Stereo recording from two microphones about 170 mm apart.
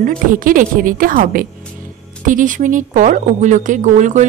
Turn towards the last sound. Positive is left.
turn(degrees=-45)  # may be behind; listen again after turning